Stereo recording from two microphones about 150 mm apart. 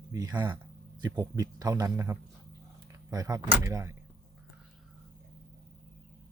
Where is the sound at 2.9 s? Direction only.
25° right (ahead or behind).